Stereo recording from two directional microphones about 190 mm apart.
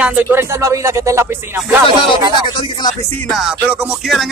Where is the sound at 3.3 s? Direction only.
5° right (ahead or behind).